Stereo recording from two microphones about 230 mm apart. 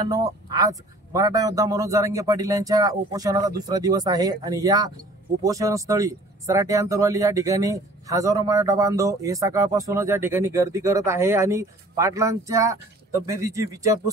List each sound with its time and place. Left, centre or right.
0.0 s speech: centre